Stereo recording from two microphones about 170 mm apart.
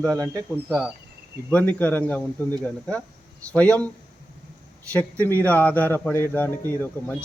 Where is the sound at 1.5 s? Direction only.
10° left (ahead or behind).